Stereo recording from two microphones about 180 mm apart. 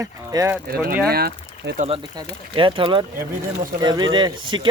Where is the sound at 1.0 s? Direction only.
60° right (ahead or behind).